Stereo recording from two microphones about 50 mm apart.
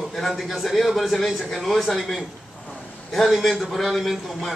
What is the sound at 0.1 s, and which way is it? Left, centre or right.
A man's voice, centre.